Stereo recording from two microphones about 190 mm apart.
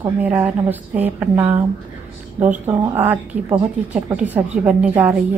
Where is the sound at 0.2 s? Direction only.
10° right (ahead or behind).